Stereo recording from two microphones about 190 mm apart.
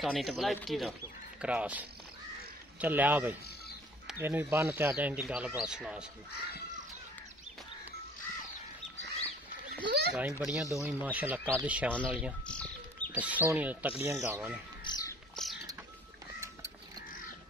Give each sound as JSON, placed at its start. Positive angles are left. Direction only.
{"t": 0.0, "sound": "speech", "side_deg": 0}
{"t": 9.8, "sound": "a sound", "side_deg": -60}
{"t": 10.1, "sound": "speech", "side_deg": -5}
{"t": 11.9, "sound": "speech", "side_deg": 5}
{"t": 12.4, "sound": "bird", "side_deg": 5}
{"t": 13.1, "sound": "speech", "side_deg": -10}
{"t": 14.9, "sound": "music", "side_deg": 20}
{"t": 15.4, "sound": "bird", "side_deg": 5}